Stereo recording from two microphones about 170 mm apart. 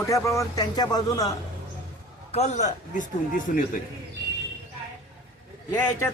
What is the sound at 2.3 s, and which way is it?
A man's voice, 40° left (ahead or behind).